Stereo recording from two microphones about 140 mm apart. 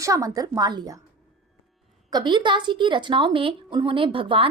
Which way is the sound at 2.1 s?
30° right (ahead or behind).